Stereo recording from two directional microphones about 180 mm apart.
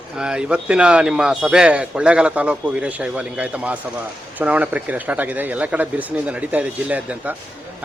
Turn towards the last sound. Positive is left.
turn(degrees=-10)  # may be behind; listen again after turning